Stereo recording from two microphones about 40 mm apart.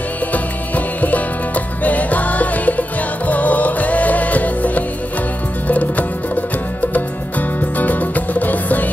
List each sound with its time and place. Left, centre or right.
0.3 s music: left